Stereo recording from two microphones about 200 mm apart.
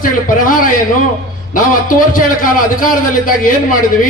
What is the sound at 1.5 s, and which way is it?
A man's voice, 45° left (ahead or behind).